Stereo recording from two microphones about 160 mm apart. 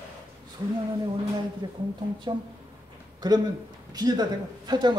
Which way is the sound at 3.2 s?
25° right (ahead or behind).